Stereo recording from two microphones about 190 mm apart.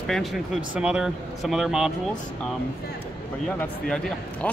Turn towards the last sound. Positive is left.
turn(degrees=5)  # may be behind; listen again after turning